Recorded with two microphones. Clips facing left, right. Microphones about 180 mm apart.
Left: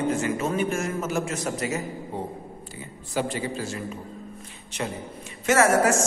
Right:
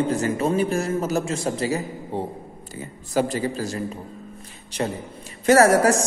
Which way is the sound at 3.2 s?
40° right (ahead or behind).